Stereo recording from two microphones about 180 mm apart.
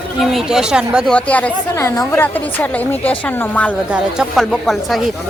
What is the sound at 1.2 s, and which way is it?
Speech, 5° left (ahead or behind).